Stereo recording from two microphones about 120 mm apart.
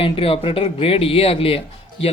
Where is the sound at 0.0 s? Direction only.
50° left (ahead or behind).